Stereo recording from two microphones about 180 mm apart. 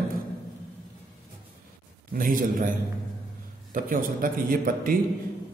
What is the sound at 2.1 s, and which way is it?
Speech, 50° right (ahead or behind).